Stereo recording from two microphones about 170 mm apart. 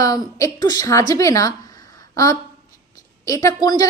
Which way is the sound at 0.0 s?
20° left (ahead or behind).